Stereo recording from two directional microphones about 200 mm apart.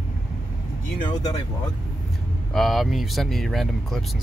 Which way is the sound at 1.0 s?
20° left (ahead or behind).